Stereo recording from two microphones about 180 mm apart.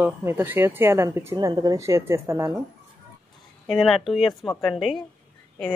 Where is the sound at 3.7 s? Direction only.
Centre (ahead or behind).